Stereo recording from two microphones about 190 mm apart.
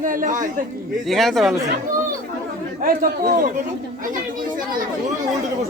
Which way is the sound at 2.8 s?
45° right (ahead or behind).